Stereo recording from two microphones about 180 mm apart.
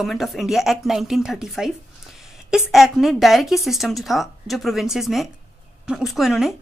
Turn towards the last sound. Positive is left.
turn(degrees=0)  # may be behind; listen again after turning